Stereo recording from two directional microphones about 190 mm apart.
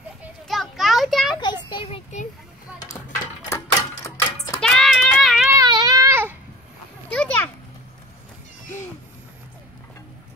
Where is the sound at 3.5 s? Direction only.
15° left (ahead or behind).